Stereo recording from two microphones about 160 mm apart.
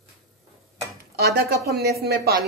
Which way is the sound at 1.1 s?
85° right.